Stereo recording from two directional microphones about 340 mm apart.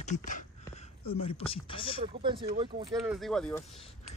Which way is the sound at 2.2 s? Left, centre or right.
Centre.